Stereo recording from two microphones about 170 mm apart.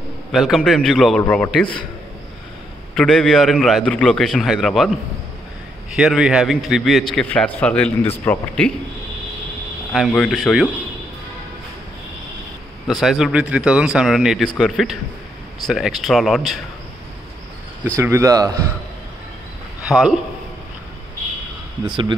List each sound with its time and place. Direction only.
0.3 s a man's voice: centre (ahead or behind)
2.9 s a man's voice: 5° left (ahead or behind)
9.9 s a man's voice: centre (ahead or behind)
12.8 s a man's voice: centre (ahead or behind)
17.9 s speech: 15° right (ahead or behind)
19.9 s a man's voice: 5° right (ahead or behind)